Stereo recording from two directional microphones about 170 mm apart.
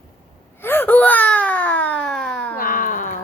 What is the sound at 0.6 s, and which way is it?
Baby cry, 10° left (ahead or behind).